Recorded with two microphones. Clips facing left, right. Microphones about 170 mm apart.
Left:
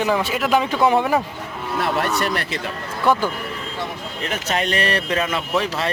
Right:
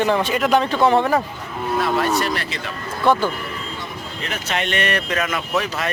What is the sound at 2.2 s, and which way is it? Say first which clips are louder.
Speech: even; 55° left (ahead or behind).